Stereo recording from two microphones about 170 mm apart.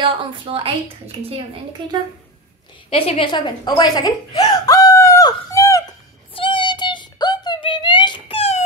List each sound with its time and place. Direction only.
0.0 s a woman's voice: 35° right (ahead or behind)
2.9 s speech: 30° left (ahead or behind)
6.3 s a sound: 30° left (ahead or behind)